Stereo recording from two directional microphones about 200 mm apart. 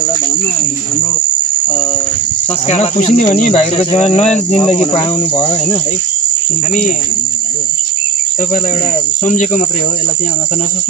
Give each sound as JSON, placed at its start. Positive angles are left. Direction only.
{"t": 2.6, "sound": "speech", "side_deg": 35}
{"t": 9.2, "sound": "speech", "side_deg": 40}